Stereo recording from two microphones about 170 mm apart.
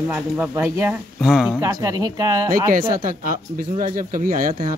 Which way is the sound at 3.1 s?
55° right (ahead or behind).